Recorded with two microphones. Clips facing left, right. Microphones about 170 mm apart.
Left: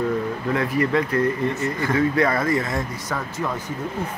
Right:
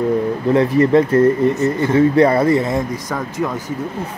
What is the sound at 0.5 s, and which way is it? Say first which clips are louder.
Speech: right 9 dB; 30° right (ahead or behind).